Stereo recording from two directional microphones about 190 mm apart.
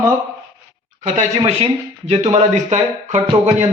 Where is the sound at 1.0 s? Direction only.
35° right (ahead or behind).